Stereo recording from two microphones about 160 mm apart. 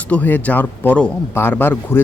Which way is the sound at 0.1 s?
10° left (ahead or behind).